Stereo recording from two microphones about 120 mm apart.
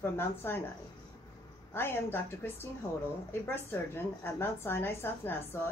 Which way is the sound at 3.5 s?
20° left (ahead or behind).